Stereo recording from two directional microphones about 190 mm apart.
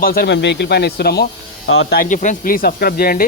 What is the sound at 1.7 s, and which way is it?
Speech, 90° left.